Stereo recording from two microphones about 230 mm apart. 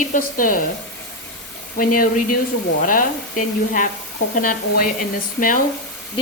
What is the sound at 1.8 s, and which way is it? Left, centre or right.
Speech, left.